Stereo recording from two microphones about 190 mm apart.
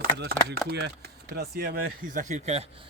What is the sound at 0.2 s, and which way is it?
Speech, 60° right (ahead or behind).